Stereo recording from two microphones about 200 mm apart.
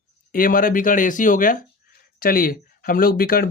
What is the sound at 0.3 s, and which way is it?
Speech, 45° left (ahead or behind).